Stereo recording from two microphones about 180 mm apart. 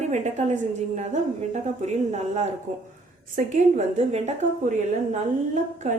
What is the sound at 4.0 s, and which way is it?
Speech, 35° right (ahead or behind).